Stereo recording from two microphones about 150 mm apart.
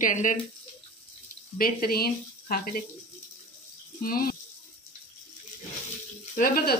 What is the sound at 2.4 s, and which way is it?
Speech, 70° left (ahead or behind).